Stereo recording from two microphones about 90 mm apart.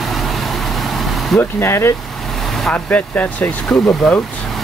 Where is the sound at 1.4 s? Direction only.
25° left (ahead or behind).